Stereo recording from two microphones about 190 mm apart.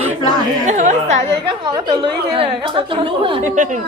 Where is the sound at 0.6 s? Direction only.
40° right (ahead or behind).